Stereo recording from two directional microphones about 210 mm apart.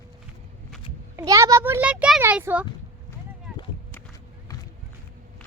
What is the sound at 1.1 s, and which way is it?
A child's voice, 15° right (ahead or behind).